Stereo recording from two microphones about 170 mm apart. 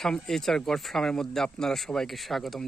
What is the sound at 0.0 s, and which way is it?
Speech, centre (ahead or behind).